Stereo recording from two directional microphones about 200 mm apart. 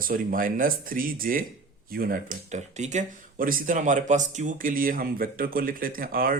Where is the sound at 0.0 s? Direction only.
45° right (ahead or behind).